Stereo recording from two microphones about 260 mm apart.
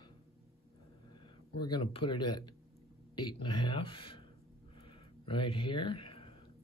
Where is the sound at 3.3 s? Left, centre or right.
Centre.